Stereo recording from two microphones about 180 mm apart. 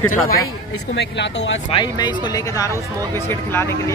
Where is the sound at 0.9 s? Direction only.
75° left (ahead or behind).